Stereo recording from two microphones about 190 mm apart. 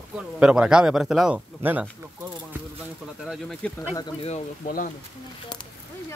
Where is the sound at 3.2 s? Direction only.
Centre (ahead or behind).